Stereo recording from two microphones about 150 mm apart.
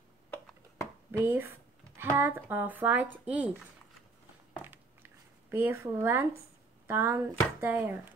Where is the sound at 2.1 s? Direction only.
15° right (ahead or behind).